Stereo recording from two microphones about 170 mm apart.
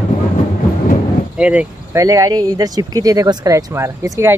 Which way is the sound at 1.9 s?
20° right (ahead or behind).